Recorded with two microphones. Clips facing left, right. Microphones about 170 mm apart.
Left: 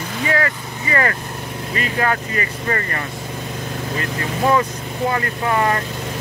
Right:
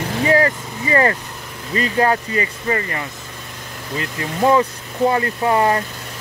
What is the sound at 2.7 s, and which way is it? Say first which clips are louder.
Speech: right 1 dB; 15° right (ahead or behind).